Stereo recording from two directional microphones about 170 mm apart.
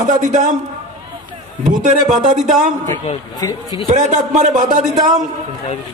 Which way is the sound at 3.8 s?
45° right (ahead or behind).